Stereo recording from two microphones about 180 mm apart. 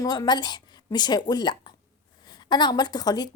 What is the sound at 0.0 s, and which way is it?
A woman's voice, 20° left (ahead or behind).